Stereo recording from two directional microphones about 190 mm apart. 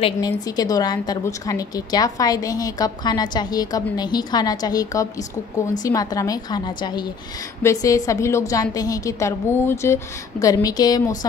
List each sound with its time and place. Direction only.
0.0 s a woman's voice: 20° left (ahead or behind)